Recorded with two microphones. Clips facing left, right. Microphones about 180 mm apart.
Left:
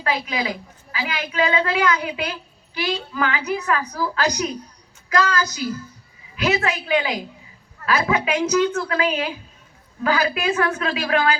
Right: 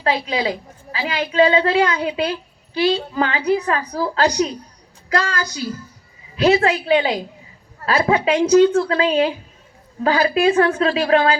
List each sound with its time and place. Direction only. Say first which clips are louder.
0.0 s a woman's voice: right 4 dB; 30° right (ahead or behind)
6.3 s a woman's voice: right 7 dB; 35° right (ahead or behind)